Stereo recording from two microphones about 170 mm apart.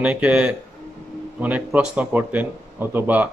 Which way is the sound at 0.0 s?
5° right (ahead or behind).